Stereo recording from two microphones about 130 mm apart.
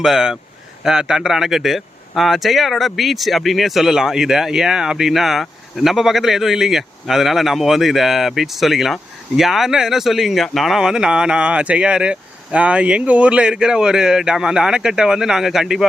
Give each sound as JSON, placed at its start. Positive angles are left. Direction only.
{"t": 0.0, "sound": "speech", "side_deg": -5}